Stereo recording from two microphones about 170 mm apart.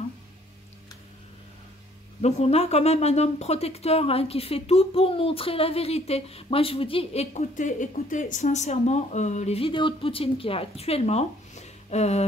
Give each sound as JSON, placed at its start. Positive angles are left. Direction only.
{"t": 2.2, "sound": "speech", "side_deg": 40}